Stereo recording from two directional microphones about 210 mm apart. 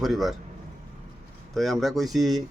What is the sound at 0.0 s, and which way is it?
Speech, centre (ahead or behind).